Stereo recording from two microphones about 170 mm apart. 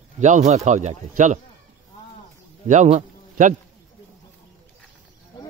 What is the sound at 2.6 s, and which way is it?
Speech, 45° right (ahead or behind).